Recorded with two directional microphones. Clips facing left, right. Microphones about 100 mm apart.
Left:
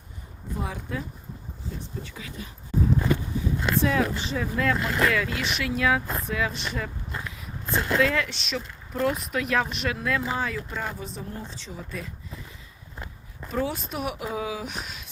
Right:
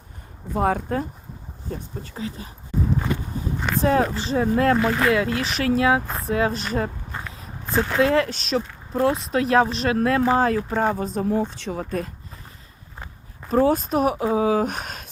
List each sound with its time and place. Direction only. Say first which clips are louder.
0.5 s speech: right 11 dB; 55° right (ahead or behind)
2.0 s speech: right 7 dB; 35° right (ahead or behind)
3.8 s speech: right 6 dB; 40° right (ahead or behind)
8.0 s speech: right 6 dB; 35° right (ahead or behind)
11.2 s speech: right 14 dB; 75° right (ahead or behind); by 12.1 s 50° right (ahead or behind)
13.5 s speech: right 10 dB; 45° right (ahead or behind)